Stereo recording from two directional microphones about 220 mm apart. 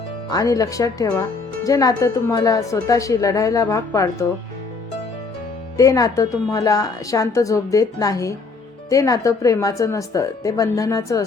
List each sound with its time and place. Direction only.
0.3 s a woman's voice: 15° left (ahead or behind)
5.7 s a woman's voice: 15° left (ahead or behind)